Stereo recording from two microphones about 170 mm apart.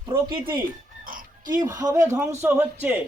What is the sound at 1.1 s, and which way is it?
Oink, 55° right (ahead or behind).